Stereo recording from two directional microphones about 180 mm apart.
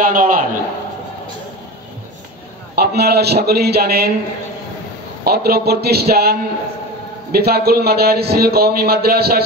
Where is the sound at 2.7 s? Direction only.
65° right (ahead or behind).